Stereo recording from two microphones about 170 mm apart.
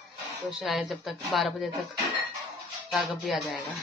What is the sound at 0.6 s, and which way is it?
Speech, centre (ahead or behind).